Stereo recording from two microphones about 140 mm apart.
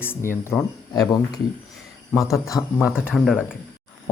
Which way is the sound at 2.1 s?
20° left (ahead or behind).